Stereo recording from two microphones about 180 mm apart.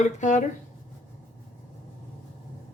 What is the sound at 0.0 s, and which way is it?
Speech, 40° left (ahead or behind).